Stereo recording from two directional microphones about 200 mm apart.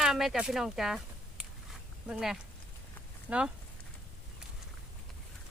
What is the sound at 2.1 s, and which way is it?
Speech, 5° right (ahead or behind).